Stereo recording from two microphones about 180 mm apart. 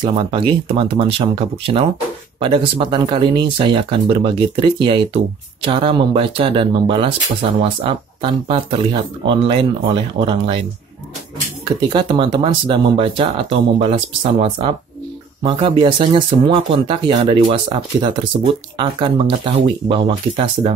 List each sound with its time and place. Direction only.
0.0 s speech: 30° right (ahead or behind)
11.9 s speech: 25° right (ahead or behind)
18.8 s speech: 25° right (ahead or behind)